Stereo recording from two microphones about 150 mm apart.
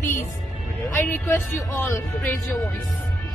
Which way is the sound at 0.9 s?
15° left (ahead or behind).